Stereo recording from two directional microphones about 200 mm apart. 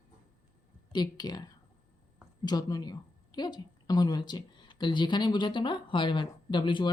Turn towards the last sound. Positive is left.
turn(degrees=25)  # may be behind; listen again after turning